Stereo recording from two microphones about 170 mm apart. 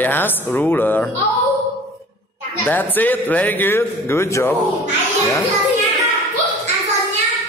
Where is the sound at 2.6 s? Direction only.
10° left (ahead or behind).